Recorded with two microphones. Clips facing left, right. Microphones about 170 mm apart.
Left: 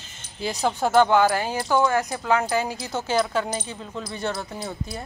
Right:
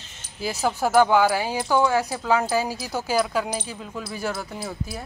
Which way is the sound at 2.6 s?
20° left (ahead or behind).